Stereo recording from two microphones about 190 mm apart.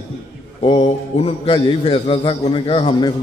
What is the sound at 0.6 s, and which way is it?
A man's voice, 30° left (ahead or behind).